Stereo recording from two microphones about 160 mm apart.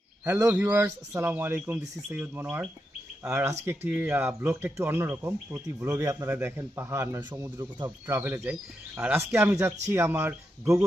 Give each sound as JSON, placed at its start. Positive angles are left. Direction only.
{"t": 0.3, "sound": "speech", "side_deg": -15}